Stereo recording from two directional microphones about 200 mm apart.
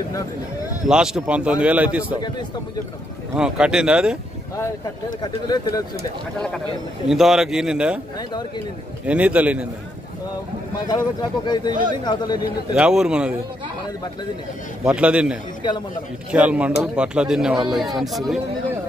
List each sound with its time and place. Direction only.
0.8 s a man's voice: 5° right (ahead or behind)
3.3 s a man's voice: 5° right (ahead or behind)
5.2 s speech: 20° left (ahead or behind)
7.1 s a man's voice: centre (ahead or behind)
8.2 s speech: 20° left (ahead or behind)
9.0 s a man's voice: 5° right (ahead or behind)
10.9 s speech: 20° left (ahead or behind)
12.7 s a man's voice: 5° right (ahead or behind)
14.9 s a man's voice: 5° right (ahead or behind)